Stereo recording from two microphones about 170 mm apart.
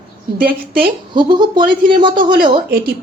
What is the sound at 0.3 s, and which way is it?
Speech, 60° right (ahead or behind).